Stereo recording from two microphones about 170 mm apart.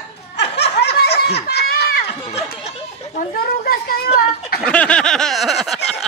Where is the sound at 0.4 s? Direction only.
85° left.